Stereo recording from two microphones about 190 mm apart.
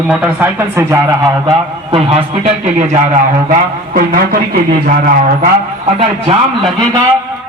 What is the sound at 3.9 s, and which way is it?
Speech, 50° right (ahead or behind).